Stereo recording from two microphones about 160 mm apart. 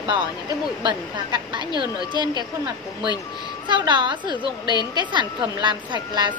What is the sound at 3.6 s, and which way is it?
Speech, 30° right (ahead or behind).